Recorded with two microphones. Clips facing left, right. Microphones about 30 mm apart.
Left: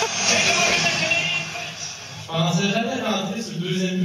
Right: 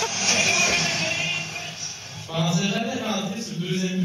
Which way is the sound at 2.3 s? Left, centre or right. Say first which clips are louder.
Left 3 dB; centre.